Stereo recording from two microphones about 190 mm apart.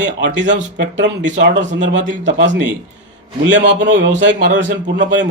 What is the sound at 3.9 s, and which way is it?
Speech, 70° right (ahead or behind).